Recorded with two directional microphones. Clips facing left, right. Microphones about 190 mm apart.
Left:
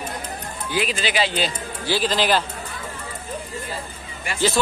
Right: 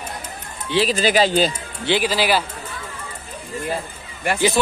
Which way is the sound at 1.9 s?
10° right (ahead or behind).